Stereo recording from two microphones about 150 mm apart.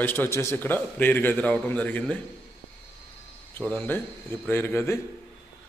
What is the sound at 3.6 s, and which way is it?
A man's voice, 5° left (ahead or behind).